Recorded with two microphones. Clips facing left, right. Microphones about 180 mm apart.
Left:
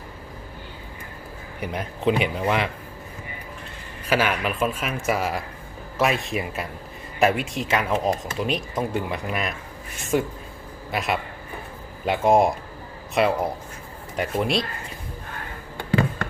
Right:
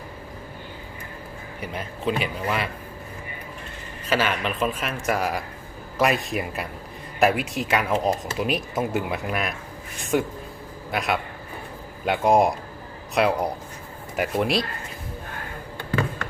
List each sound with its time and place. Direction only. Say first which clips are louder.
1.8 s speech: left 4 dB; 15° left (ahead or behind)
4.0 s speech: left 1 dB; 10° left (ahead or behind)